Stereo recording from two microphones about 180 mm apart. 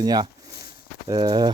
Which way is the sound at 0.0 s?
20° right (ahead or behind).